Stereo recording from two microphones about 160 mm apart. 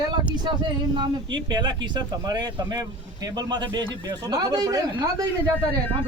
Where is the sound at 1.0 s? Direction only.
30° right (ahead or behind).